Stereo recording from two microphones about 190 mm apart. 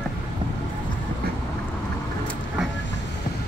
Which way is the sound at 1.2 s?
55° right (ahead or behind).